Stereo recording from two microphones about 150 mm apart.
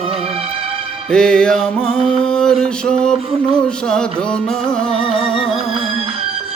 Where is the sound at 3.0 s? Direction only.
5° left (ahead or behind).